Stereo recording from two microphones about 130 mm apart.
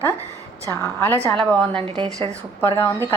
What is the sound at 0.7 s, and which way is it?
Speech, 20° left (ahead or behind).